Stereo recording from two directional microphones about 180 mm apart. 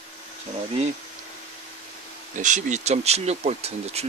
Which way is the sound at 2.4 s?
45° right (ahead or behind).